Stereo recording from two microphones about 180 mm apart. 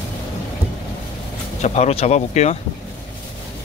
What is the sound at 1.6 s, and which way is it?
Speech, 40° left (ahead or behind).